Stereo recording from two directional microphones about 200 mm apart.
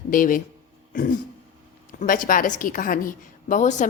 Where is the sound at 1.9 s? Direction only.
40° left (ahead or behind).